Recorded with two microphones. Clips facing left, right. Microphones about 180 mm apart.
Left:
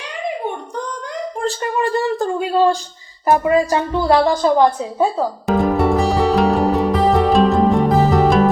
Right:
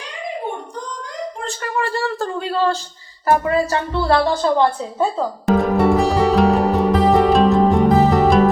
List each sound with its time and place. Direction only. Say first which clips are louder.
1.6 s speech: left 2 dB; 20° left (ahead or behind)
5.5 s music: right 1 dB; centre (ahead or behind)